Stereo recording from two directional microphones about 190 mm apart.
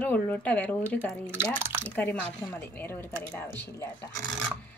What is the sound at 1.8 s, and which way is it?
Speech, 5° left (ahead or behind).